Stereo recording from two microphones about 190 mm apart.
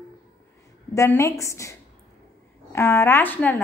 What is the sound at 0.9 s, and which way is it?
A woman's voice, 15° left (ahead or behind).